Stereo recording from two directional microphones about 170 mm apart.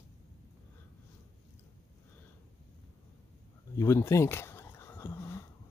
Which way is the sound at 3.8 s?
15° left (ahead or behind).